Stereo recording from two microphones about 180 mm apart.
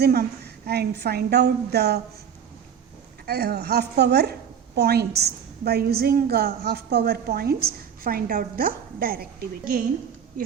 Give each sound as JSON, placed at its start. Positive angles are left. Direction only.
{"t": 0.0, "sound": "a woman's voice", "side_deg": -60}
{"t": 3.2, "sound": "a woman's voice", "side_deg": -60}